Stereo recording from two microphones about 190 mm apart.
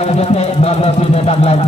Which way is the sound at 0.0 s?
35° left (ahead or behind).